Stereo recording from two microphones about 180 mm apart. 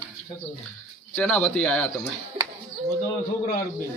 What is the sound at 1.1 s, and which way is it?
Speech, 5° left (ahead or behind).